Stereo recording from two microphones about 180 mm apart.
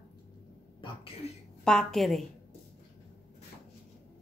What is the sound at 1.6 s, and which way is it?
Speech, 5° left (ahead or behind).